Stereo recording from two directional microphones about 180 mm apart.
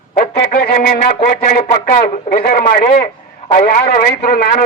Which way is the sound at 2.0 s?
55° left (ahead or behind).